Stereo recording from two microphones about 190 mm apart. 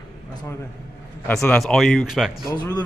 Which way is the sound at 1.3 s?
5° left (ahead or behind).